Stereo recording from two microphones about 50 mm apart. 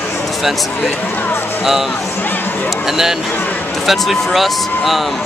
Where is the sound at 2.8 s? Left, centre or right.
Centre.